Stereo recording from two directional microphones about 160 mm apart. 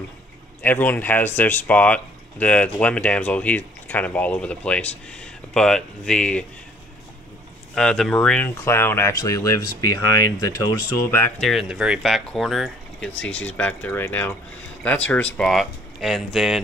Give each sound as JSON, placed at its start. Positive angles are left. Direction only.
{"t": 0.6, "sound": "speech", "side_deg": 10}
{"t": 7.7, "sound": "speech", "side_deg": 5}
{"t": 11.3, "sound": "speech", "side_deg": 0}